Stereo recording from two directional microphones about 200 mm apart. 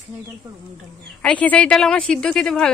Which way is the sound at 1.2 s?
5° left (ahead or behind).